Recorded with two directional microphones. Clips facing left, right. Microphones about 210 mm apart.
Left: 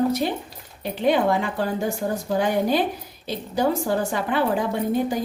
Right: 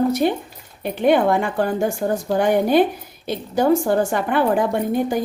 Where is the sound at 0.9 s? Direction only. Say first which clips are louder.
Right 4 dB; 55° right (ahead or behind).